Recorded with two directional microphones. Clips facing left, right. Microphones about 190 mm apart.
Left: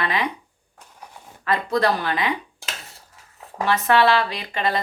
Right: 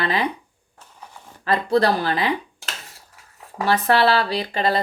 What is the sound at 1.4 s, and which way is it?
Speech, 30° right (ahead or behind).